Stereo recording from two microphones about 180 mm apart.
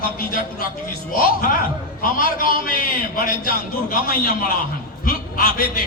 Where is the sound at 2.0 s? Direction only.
50° left (ahead or behind).